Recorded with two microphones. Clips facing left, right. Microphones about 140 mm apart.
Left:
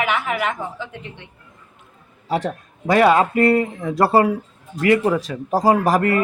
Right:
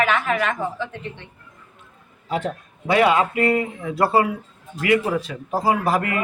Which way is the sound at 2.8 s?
40° left (ahead or behind).